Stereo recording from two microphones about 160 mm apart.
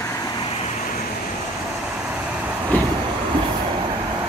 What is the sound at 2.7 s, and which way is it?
Vehicle, 10° left (ahead or behind).